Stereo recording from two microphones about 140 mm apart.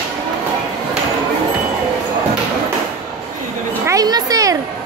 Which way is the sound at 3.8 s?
25° right (ahead or behind).